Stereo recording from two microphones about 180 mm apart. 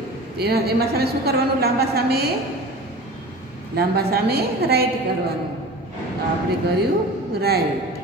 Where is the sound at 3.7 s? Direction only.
60° right (ahead or behind).